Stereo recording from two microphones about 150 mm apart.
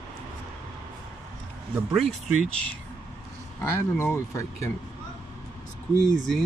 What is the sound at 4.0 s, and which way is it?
Speech, 20° left (ahead or behind).